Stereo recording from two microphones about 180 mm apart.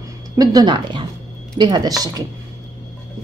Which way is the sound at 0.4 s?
20° right (ahead or behind).